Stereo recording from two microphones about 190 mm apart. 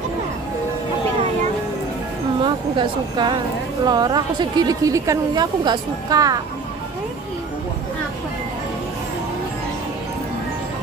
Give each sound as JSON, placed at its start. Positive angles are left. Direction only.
{"t": 2.4, "sound": "a woman's voice", "side_deg": -25}